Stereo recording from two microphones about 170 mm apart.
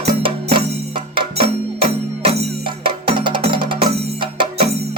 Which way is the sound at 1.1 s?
35° right (ahead or behind).